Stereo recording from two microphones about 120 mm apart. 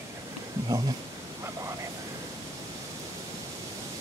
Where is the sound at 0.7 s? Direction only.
30° right (ahead or behind).